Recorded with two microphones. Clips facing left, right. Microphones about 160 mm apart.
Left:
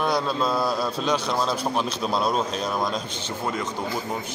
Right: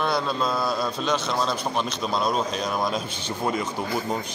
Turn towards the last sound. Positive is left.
turn(degrees=-15)  # may be behind; listen again after turning